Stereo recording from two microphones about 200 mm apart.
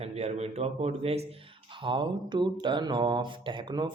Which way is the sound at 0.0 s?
30° right (ahead or behind).